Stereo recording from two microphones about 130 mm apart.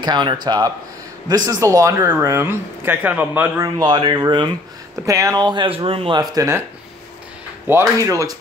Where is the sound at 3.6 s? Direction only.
35° right (ahead or behind).